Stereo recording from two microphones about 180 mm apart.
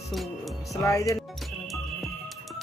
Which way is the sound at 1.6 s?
Centre (ahead or behind).